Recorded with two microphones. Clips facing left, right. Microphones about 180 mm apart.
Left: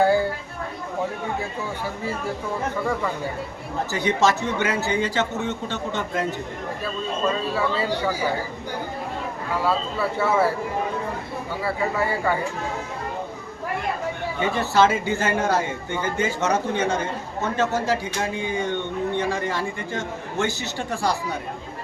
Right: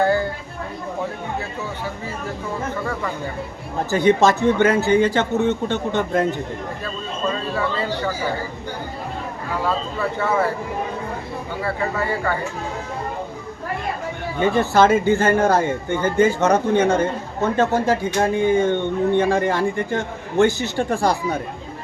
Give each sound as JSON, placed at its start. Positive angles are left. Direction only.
{"t": 0.0, "sound": "a sound", "side_deg": 10}
{"t": 3.9, "sound": "a man's voice", "side_deg": -55}
{"t": 7.5, "sound": "speech", "side_deg": 10}
{"t": 9.6, "sound": "speech", "side_deg": 10}
{"t": 11.6, "sound": "speech", "side_deg": 10}
{"t": 14.6, "sound": "speech", "side_deg": -50}